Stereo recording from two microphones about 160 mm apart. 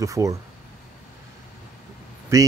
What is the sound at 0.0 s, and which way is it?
Speech, 20° right (ahead or behind).